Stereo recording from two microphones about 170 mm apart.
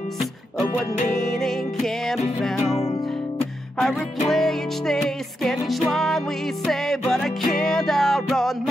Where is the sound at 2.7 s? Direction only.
40° left (ahead or behind).